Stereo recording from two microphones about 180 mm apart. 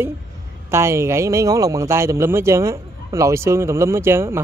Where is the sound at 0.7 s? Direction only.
15° right (ahead or behind).